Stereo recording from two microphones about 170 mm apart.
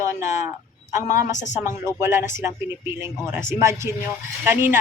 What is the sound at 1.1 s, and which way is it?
Speech, 50° left (ahead or behind).